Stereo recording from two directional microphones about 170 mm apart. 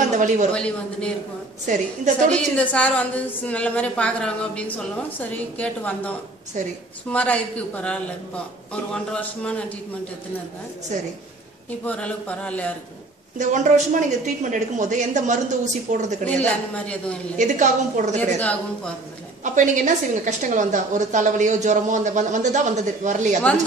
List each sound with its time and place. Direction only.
0.5 s speech: 5° left (ahead or behind)
1.7 s a woman's voice: 50° right (ahead or behind)
2.3 s a woman's voice: 5° left (ahead or behind)
11.8 s a woman's voice: 5° left (ahead or behind)
13.4 s a woman's voice: 45° right (ahead or behind)
16.4 s a woman's voice: 10° left (ahead or behind)
17.4 s a woman's voice: 45° right (ahead or behind)
18.4 s a woman's voice: 10° left (ahead or behind)
19.4 s a woman's voice: 45° right (ahead or behind)